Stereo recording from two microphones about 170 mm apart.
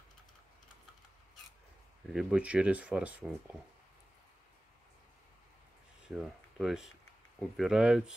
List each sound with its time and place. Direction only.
2.1 s speech: 5° right (ahead or behind)
6.0 s speech: 5° right (ahead or behind)